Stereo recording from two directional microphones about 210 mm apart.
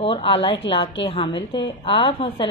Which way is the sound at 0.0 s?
25° left (ahead or behind).